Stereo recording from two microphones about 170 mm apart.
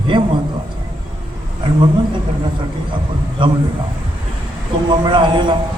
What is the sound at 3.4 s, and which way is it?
Speech, 30° right (ahead or behind).